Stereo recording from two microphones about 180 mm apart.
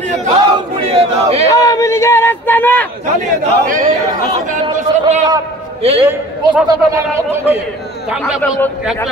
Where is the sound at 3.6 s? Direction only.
50° right (ahead or behind).